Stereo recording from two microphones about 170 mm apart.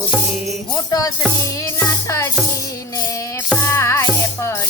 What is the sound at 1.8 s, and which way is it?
Music, 15° left (ahead or behind).